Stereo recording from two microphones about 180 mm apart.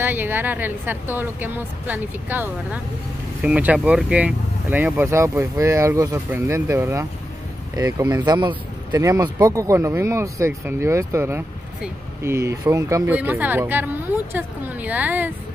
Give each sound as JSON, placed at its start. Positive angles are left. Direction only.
{"t": 0.0, "sound": "speech", "side_deg": -10}